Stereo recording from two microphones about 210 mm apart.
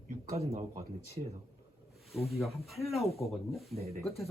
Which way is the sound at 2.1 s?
Centre (ahead or behind).